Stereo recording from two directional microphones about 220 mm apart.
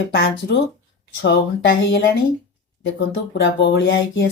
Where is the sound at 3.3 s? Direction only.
55° left (ahead or behind).